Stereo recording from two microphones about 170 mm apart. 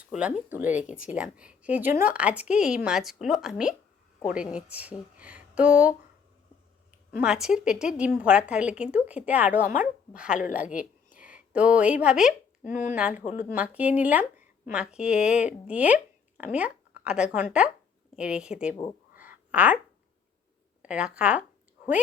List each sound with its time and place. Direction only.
0.0 s a woman's voice: 5° right (ahead or behind)
0.7 s speech: 45° left (ahead or behind)
0.9 s a woman's voice: 5° right (ahead or behind)
7.2 s a woman's voice: 5° right (ahead or behind)
12.6 s speech: 50° left (ahead or behind)
13.0 s a woman's voice: 5° right (ahead or behind)
13.2 s speech: 50° left (ahead or behind)
13.5 s a woman's voice: 10° right (ahead or behind)
19.1 s a sound: 10° right (ahead or behind)
20.8 s a woman's voice: 5° right (ahead or behind)